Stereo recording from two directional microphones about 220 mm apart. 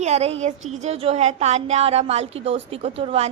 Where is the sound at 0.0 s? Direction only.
30° right (ahead or behind).